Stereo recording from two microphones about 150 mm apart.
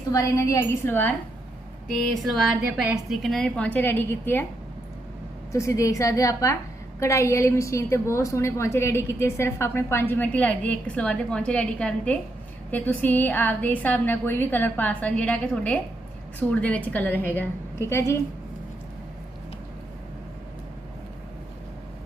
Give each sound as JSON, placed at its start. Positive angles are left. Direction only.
{"t": 0.1, "sound": "a woman's voice", "side_deg": 20}
{"t": 1.9, "sound": "a woman's voice", "side_deg": 0}
{"t": 5.5, "sound": "a woman's voice", "side_deg": 20}